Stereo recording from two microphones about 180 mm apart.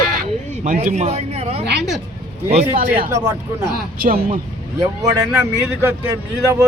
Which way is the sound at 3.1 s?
15° right (ahead or behind).